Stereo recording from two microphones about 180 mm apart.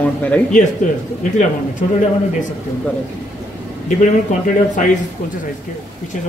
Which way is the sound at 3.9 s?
45° left (ahead or behind).